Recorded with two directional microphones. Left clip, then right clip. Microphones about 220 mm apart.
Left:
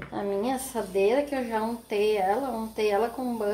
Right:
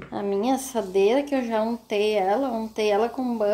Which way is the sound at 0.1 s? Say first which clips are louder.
Right 4 dB; 45° right (ahead or behind).